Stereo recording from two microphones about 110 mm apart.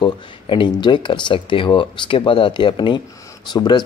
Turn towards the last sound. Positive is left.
turn(degrees=40)  # may be behind; listen again after turning